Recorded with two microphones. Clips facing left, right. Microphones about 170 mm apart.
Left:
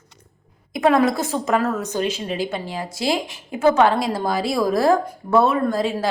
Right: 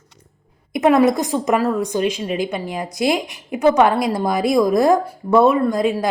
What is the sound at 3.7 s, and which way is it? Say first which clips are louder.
A woman's voice: right 2 dB; 15° right (ahead or behind).